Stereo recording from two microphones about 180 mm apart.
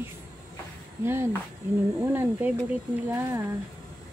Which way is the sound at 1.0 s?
15° right (ahead or behind).